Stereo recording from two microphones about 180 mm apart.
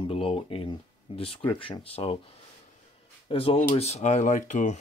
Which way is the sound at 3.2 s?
30° left (ahead or behind).